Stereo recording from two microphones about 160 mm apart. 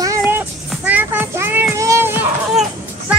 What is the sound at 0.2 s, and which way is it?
Child singing, 15° right (ahead or behind).